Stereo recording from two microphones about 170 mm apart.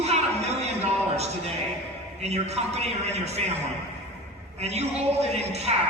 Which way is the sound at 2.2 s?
40° right (ahead or behind).